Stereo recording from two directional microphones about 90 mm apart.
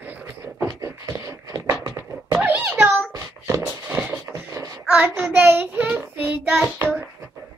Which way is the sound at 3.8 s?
15° right (ahead or behind).